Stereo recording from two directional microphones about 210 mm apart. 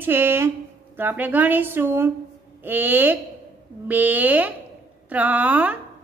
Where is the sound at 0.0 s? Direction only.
10° right (ahead or behind).